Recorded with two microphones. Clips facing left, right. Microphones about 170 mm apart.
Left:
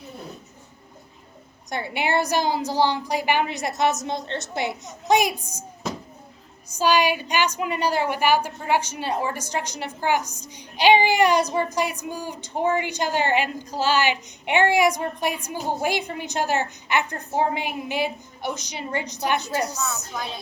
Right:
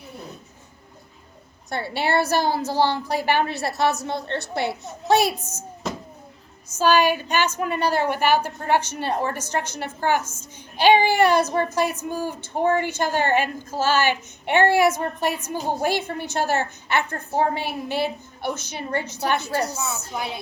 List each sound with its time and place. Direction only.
1.7 s a woman's voice: 15° left (ahead or behind)
6.7 s a woman's voice: 15° left (ahead or behind)
20.1 s a woman's voice: 15° right (ahead or behind)